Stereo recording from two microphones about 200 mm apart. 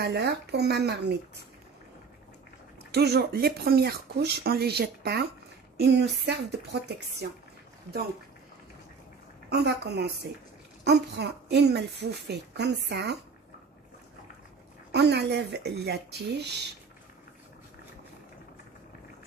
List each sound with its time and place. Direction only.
0.0 s speech: 55° right (ahead or behind)
2.9 s speech: 55° right (ahead or behind)
9.5 s speech: 55° right (ahead or behind)
14.9 s speech: 55° right (ahead or behind)